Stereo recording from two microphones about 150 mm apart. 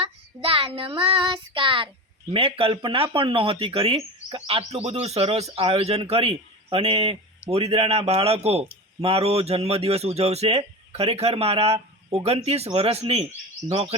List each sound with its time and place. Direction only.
0.0 s speech: 40° right (ahead or behind)